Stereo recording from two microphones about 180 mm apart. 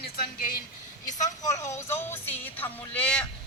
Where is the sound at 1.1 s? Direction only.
40° left (ahead or behind).